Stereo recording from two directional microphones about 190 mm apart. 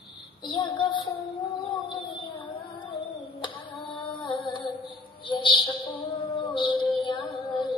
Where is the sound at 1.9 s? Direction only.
25° left (ahead or behind).